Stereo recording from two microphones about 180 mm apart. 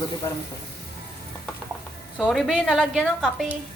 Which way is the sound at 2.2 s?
Centre (ahead or behind).